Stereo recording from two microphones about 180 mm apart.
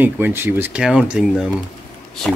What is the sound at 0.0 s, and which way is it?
Speech, 10° right (ahead or behind).